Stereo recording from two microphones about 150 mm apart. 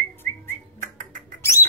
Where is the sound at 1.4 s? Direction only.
20° left (ahead or behind).